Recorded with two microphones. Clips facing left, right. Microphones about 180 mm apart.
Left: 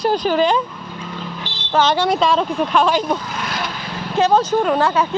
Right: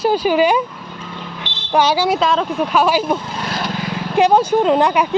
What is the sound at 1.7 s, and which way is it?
Speech, 10° right (ahead or behind).